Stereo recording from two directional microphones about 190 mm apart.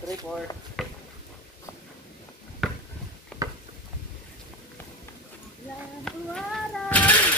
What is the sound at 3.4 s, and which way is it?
Gears, 20° right (ahead or behind).